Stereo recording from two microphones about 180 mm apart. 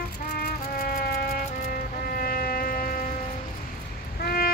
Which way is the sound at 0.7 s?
55° left (ahead or behind).